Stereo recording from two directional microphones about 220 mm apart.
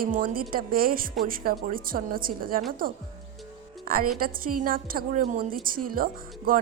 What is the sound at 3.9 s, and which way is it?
A woman's voice, 40° right (ahead or behind).